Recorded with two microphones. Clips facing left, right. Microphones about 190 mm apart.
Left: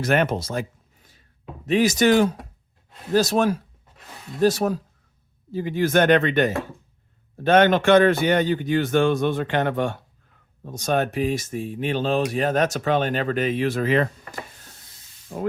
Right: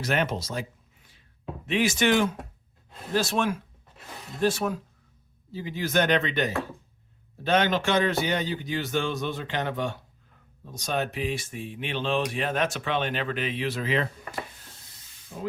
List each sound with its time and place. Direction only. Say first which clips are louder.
0.0 s speech: left 6 dB; 55° left (ahead or behind)
5.5 s a man's voice: left 9 dB; 55° left (ahead or behind)
15.3 s speech: left 7 dB; 45° left (ahead or behind)